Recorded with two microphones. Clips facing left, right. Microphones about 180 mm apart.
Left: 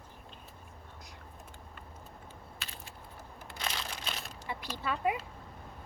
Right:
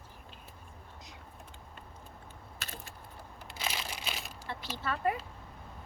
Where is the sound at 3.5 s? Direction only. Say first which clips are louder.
Right 1 dB; 5° right (ahead or behind).